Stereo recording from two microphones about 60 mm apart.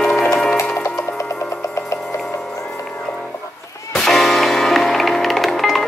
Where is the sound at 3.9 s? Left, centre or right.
Centre.